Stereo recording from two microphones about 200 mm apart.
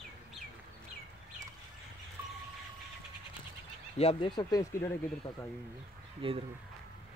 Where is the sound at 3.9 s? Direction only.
30° left (ahead or behind).